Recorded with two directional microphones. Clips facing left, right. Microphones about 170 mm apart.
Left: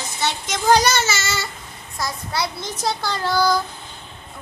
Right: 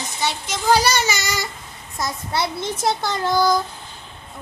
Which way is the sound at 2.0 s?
25° right (ahead or behind).